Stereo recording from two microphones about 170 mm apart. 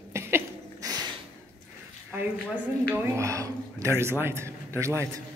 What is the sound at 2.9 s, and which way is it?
A man's voice, 15° right (ahead or behind).